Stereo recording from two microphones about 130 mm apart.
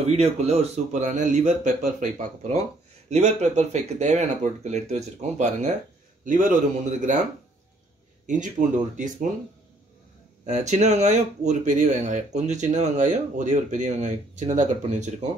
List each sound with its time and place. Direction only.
0.0 s speech: 55° right (ahead or behind)
6.2 s speech: 90° right
8.3 s speech: 75° right (ahead or behind)
10.4 s speech: 60° right (ahead or behind)